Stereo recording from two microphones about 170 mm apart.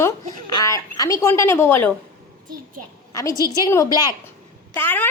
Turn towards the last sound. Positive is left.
turn(degrees=10)  # may be behind; listen again after turning